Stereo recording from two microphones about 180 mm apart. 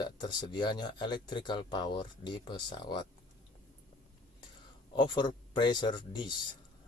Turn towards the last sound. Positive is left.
turn(degrees=25)  # may be behind; listen again after turning